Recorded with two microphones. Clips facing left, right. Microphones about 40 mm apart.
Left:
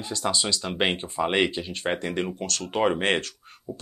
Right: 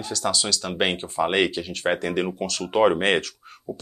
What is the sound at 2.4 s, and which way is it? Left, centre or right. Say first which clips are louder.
Speech: right 5 dB; centre.